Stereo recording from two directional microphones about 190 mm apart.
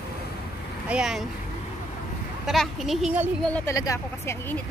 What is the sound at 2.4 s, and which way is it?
Speech, centre (ahead or behind).